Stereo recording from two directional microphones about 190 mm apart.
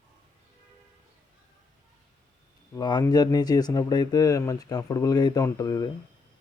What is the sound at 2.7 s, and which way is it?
Speech, 20° left (ahead or behind).